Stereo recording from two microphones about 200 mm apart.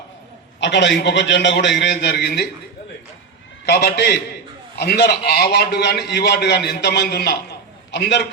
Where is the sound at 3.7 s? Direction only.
55° left (ahead or behind).